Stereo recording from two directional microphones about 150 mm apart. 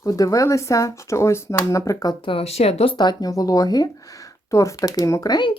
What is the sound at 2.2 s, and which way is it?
Speech, 40° left (ahead or behind).